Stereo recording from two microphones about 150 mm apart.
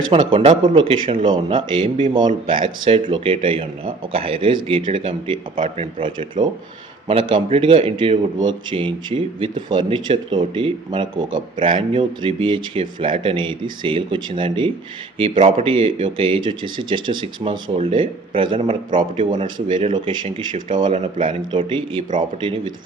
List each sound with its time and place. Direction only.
0.1 s speech: 35° right (ahead or behind)